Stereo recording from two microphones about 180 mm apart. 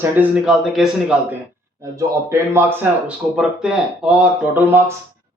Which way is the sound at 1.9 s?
15° right (ahead or behind).